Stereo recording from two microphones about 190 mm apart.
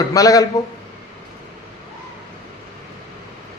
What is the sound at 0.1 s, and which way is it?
Speech, 20° left (ahead or behind).